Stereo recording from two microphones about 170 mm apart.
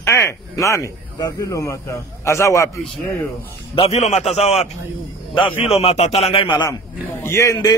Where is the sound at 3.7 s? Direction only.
40° left (ahead or behind).